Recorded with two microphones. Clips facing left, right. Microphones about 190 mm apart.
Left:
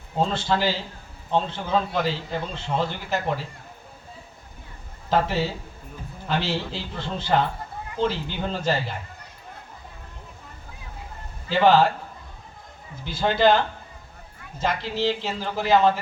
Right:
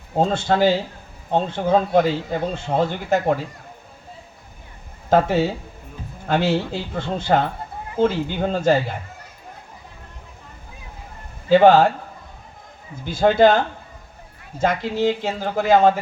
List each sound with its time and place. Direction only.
0.2 s speech: 50° right (ahead or behind)
5.0 s speech: 50° right (ahead or behind)
11.4 s speech: 50° right (ahead or behind)
13.1 s speech: 50° right (ahead or behind)
14.6 s speech: 50° right (ahead or behind)